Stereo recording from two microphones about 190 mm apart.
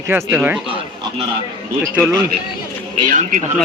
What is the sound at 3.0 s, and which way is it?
Speech, 40° right (ahead or behind).